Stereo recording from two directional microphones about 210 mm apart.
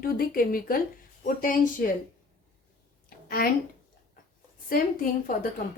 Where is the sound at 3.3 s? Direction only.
45° left (ahead or behind).